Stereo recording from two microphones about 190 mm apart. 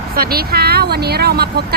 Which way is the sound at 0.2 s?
50° right (ahead or behind).